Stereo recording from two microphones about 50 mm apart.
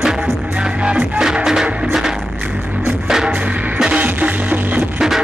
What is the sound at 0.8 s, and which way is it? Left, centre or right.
Music, right.